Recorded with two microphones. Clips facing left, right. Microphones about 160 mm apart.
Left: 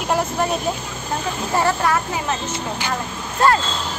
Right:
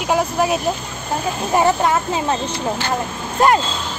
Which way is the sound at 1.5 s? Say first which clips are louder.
Right 3 dB; 20° right (ahead or behind).